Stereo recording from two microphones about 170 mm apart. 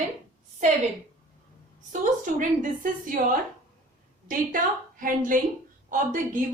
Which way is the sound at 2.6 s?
55° right (ahead or behind).